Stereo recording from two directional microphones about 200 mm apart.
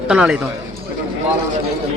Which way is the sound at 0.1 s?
5° right (ahead or behind).